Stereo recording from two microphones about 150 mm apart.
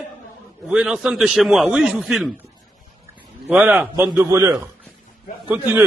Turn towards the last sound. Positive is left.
turn(degrees=-10)  # may be behind; listen again after turning